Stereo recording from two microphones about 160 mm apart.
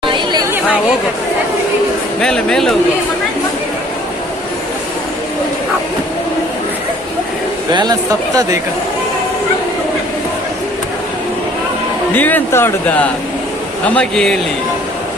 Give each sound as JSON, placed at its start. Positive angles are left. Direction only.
{"t": 0.0, "sound": "chatter", "side_deg": -30}
{"t": 2.2, "sound": "speech", "side_deg": 5}
{"t": 7.7, "sound": "speech", "side_deg": -25}
{"t": 12.1, "sound": "speech", "side_deg": 10}